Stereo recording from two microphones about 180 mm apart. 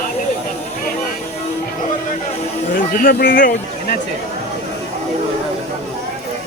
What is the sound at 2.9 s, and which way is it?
Speech, 55° left (ahead or behind).